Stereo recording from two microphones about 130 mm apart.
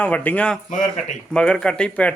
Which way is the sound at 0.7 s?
70° left (ahead or behind).